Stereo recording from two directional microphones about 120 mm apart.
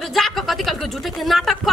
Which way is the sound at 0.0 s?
Centre (ahead or behind).